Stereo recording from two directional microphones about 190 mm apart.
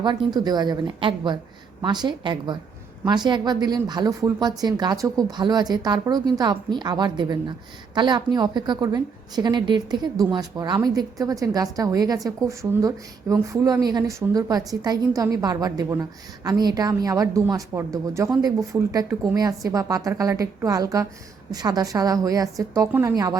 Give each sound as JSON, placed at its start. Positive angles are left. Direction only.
{"t": 0.0, "sound": "a woman's voice", "side_deg": -25}